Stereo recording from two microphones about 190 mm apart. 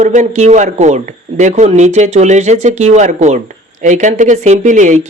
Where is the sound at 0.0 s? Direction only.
40° right (ahead or behind).